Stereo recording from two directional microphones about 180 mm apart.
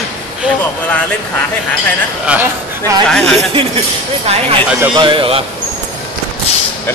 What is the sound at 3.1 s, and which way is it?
Speech, 5° left (ahead or behind).